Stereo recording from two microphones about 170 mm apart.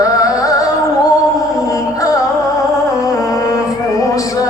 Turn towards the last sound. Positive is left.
turn(degrees=20)  # may be behind; listen again after turning